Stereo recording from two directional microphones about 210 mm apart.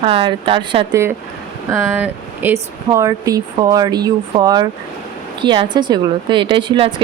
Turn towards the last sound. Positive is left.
turn(degrees=-25)  # may be behind; listen again after turning